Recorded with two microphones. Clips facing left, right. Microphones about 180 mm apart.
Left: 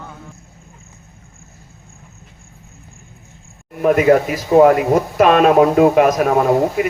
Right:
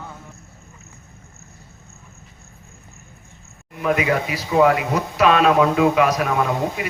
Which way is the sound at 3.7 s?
50° left (ahead or behind).